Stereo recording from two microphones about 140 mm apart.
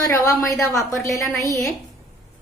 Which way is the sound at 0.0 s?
25° left (ahead or behind).